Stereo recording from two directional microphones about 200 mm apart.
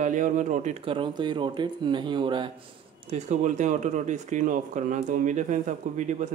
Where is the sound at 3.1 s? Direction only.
35° right (ahead or behind).